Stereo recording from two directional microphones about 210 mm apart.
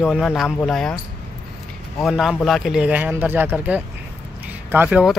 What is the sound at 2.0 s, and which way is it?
Speech, centre (ahead or behind).